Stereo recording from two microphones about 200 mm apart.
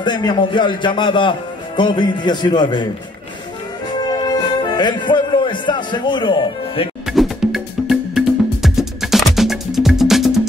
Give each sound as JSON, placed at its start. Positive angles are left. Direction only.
{"t": 0.0, "sound": "a man's voice", "side_deg": 20}
{"t": 4.0, "sound": "music", "side_deg": 20}
{"t": 7.1, "sound": "music", "side_deg": 0}